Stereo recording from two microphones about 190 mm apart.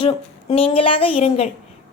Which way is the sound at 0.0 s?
30° left (ahead or behind).